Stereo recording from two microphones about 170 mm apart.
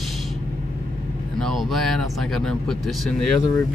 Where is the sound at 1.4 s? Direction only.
Centre (ahead or behind).